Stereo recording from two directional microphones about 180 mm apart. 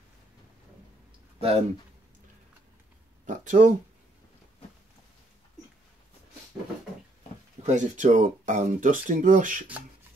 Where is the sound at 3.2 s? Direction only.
45° right (ahead or behind).